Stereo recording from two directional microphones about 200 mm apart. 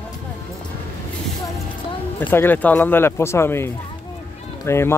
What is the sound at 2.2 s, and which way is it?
Speech, 10° left (ahead or behind).